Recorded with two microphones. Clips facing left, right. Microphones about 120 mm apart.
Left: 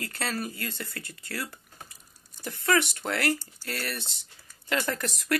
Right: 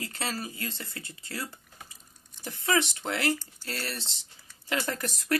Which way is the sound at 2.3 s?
55° left (ahead or behind).